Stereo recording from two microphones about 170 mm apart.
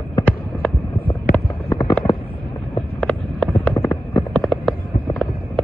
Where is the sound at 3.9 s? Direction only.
25° left (ahead or behind).